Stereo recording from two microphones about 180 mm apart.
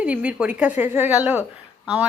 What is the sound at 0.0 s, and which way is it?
A woman's voice, 5° right (ahead or behind).